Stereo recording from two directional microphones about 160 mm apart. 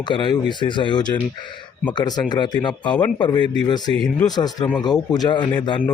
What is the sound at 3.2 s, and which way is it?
Speech, 30° left (ahead or behind).